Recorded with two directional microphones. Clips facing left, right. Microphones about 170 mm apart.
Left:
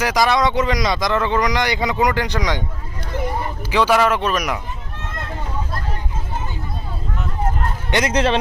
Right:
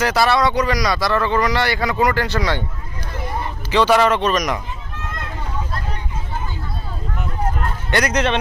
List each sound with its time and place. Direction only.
0.0 s a man's voice: 15° left (ahead or behind)
3.7 s a man's voice: 10° left (ahead or behind)
7.9 s a man's voice: 20° left (ahead or behind)